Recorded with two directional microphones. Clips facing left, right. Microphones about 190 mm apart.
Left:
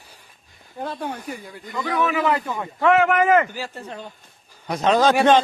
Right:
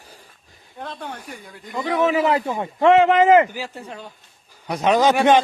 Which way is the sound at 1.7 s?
25° right (ahead or behind).